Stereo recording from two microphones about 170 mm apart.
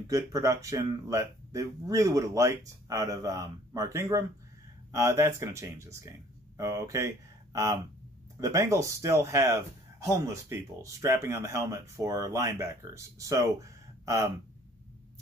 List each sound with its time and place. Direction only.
0.0 s speech: 20° right (ahead or behind)